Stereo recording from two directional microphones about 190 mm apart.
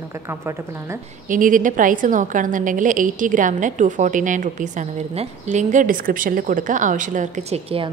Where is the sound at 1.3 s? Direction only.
45° right (ahead or behind).